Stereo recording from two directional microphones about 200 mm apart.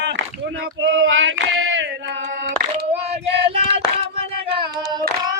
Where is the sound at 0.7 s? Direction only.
70° right (ahead or behind).